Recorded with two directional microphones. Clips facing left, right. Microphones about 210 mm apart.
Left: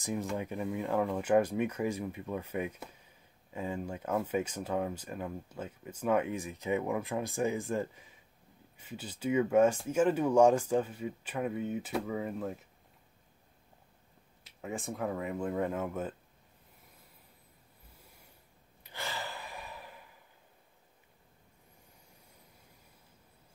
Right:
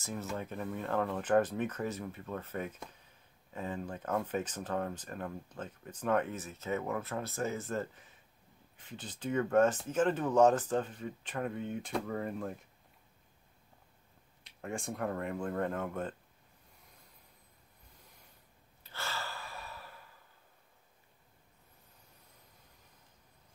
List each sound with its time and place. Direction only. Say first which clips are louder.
0.0 s speech: left 4 dB; 15° left (ahead or behind)
14.4 s speech: left 1 dB; centre (ahead or behind)
18.8 s sigh: left 2 dB; 15° left (ahead or behind)